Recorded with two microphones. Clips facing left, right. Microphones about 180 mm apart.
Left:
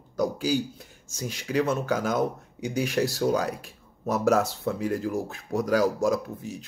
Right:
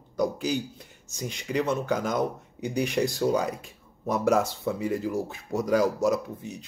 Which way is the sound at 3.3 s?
90° left.